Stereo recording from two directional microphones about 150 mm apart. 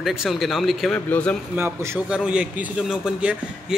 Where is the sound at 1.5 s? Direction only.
15° right (ahead or behind).